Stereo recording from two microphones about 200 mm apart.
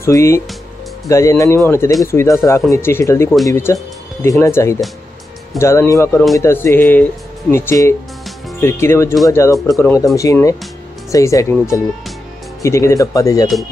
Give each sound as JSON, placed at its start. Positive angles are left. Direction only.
{"t": 0.0, "sound": "speech", "side_deg": 15}
{"t": 12.6, "sound": "speech", "side_deg": 15}